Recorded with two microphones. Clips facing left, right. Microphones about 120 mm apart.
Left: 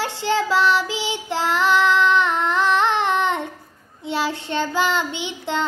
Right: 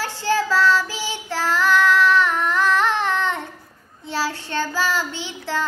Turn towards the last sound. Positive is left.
turn(degrees=20)  # may be behind; listen again after turning